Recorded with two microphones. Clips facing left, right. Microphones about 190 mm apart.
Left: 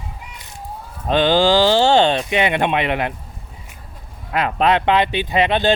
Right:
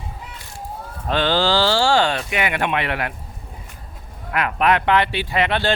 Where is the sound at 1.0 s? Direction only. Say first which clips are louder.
Left 4 dB; 15° left (ahead or behind).